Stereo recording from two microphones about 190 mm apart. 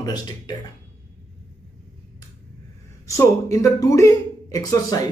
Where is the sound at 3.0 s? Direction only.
15° left (ahead or behind).